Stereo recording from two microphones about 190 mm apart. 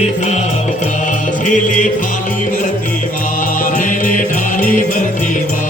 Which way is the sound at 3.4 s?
45° left (ahead or behind).